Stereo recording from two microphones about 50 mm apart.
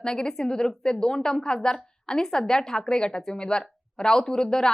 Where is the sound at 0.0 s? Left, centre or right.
Centre.